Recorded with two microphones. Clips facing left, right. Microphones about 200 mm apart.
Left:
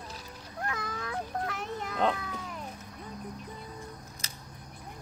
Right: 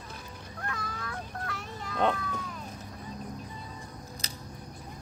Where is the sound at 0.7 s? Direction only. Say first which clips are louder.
Left 3 dB; 20° left (ahead or behind).